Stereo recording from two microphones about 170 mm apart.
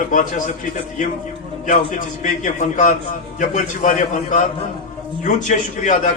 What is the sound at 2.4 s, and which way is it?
A man's voice, 45° left (ahead or behind).